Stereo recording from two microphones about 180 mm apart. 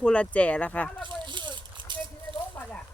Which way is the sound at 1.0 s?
25° right (ahead or behind).